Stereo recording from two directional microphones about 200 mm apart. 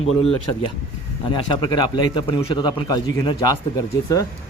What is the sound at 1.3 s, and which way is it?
A man's voice, 20° left (ahead or behind).